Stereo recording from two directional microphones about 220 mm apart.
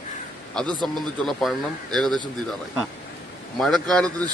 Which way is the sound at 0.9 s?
Centre (ahead or behind).